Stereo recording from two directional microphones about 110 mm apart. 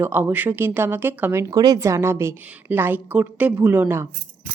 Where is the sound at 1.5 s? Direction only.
35° right (ahead or behind); by 4.1 s 20° right (ahead or behind).